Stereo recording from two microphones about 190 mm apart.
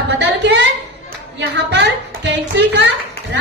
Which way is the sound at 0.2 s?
65° right (ahead or behind).